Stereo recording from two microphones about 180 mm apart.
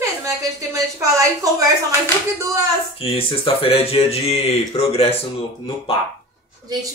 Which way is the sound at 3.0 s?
30° left (ahead or behind).